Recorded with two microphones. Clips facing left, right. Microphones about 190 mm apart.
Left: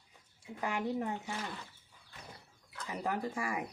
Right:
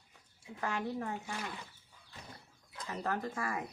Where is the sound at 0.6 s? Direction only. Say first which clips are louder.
Left 2 dB; 15° left (ahead or behind).